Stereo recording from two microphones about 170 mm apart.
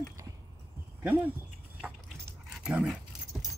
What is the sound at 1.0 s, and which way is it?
Speech, 10° right (ahead or behind).